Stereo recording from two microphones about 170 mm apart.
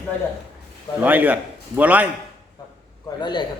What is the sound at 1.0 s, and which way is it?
A man's voice, 10° right (ahead or behind).